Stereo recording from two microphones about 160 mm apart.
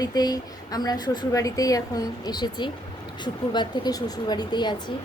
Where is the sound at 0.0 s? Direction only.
25° left (ahead or behind).